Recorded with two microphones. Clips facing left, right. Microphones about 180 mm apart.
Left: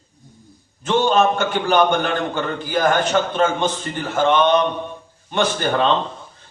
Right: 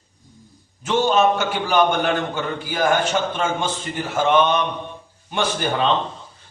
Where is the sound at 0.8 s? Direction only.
10° right (ahead or behind).